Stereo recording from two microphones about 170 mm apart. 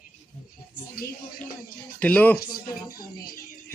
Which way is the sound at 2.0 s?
10° left (ahead or behind).